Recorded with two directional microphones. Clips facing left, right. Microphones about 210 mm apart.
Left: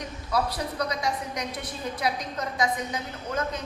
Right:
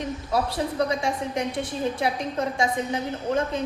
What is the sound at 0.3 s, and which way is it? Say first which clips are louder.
A woman's voice: right 1 dB; 25° right (ahead or behind).